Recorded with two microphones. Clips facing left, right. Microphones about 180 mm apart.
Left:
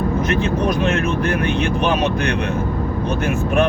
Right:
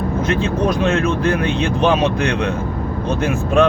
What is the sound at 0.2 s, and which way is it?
Speech, 25° right (ahead or behind).